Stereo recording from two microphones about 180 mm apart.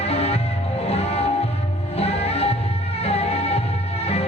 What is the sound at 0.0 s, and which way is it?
Music, 35° left (ahead or behind).